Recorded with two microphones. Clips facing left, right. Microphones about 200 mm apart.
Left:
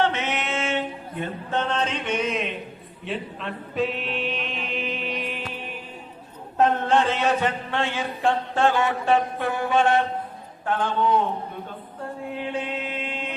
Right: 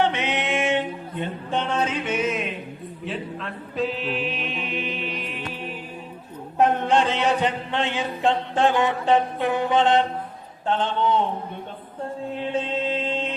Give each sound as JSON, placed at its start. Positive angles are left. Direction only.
{"t": 0.0, "sound": "a sound", "side_deg": -15}
{"t": 3.0, "sound": "chant", "side_deg": 0}
{"t": 6.6, "sound": "a man's voice", "side_deg": -15}
{"t": 12.5, "sound": "chant", "side_deg": -25}